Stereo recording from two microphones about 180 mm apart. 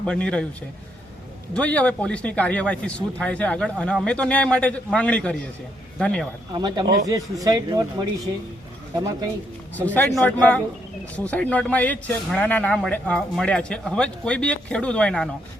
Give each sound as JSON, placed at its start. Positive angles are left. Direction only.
{"t": 0.0, "sound": "speech", "side_deg": 5}
{"t": 1.5, "sound": "speech", "side_deg": 5}
{"t": 6.5, "sound": "speech", "side_deg": -25}
{"t": 9.7, "sound": "speech", "side_deg": 10}